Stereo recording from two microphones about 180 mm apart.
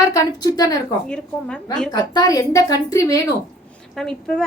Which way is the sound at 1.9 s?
20° left (ahead or behind).